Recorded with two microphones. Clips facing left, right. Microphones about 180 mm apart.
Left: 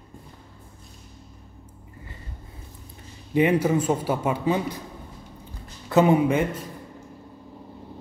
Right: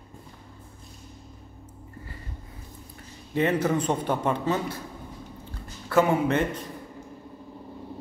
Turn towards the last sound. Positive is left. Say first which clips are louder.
# left 3 dB
turn(degrees=10)  # may be behind; listen again after turning